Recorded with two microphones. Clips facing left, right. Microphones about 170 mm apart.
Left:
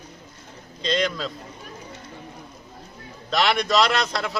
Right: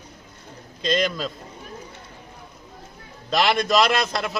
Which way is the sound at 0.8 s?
5° right (ahead or behind).